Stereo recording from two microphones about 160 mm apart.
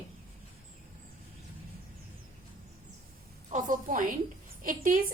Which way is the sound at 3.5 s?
55° right (ahead or behind).